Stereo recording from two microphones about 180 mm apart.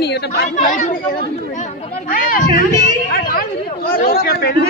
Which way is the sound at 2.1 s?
50° left (ahead or behind).